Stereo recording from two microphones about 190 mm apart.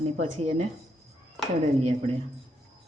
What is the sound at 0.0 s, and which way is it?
Speech, 35° right (ahead or behind).